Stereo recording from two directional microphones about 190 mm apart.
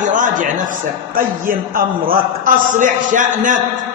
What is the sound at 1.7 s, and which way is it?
A man's voice, 50° right (ahead or behind).